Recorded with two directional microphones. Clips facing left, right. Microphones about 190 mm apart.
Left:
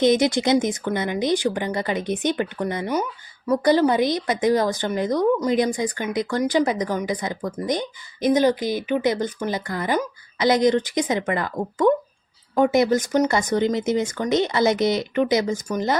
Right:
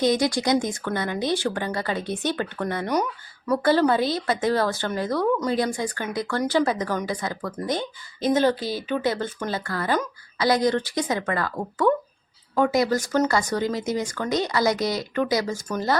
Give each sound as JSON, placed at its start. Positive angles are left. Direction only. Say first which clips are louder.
{"t": 0.0, "sound": "speech", "louder": "left 3 dB", "side_deg": 20}